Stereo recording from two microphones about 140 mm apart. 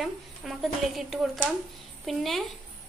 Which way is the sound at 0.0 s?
Centre (ahead or behind).